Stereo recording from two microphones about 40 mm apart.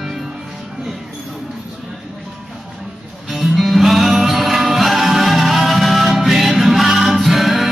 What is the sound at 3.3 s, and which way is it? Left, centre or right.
Music, centre.